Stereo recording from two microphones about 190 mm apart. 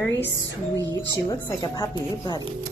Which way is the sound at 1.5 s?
20° left (ahead or behind).